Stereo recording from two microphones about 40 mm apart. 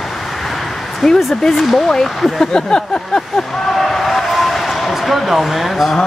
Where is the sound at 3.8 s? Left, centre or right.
Centre.